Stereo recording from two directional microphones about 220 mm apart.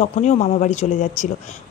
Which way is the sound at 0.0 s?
30° left (ahead or behind).